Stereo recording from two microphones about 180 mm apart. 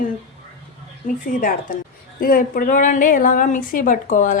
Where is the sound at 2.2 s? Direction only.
50° left (ahead or behind).